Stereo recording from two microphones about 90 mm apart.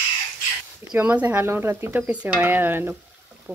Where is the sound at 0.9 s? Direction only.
15° right (ahead or behind).